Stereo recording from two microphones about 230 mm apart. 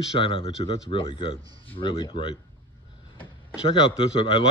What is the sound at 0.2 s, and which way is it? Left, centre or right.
Speech, left.